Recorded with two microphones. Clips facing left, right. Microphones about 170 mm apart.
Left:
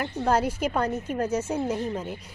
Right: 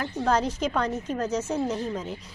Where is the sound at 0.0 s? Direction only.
10° left (ahead or behind).